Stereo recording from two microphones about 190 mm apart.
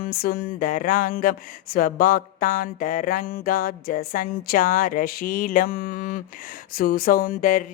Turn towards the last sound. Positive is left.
turn(degrees=45)  # may be behind; listen again after turning